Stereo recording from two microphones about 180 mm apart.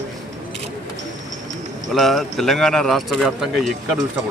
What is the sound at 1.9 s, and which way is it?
Speech, centre (ahead or behind).